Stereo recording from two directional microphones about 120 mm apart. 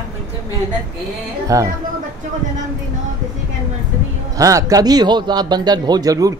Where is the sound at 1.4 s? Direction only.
25° right (ahead or behind).